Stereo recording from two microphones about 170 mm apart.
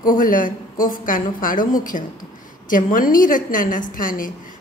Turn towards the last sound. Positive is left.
turn(degrees=55)  # may be behind; listen again after turning